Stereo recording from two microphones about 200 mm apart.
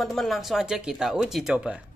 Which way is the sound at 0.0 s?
Centre (ahead or behind).